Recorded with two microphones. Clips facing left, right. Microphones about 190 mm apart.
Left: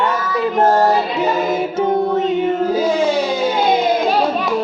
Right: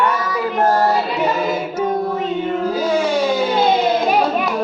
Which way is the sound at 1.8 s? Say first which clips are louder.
Left 4 dB; 25° left (ahead or behind).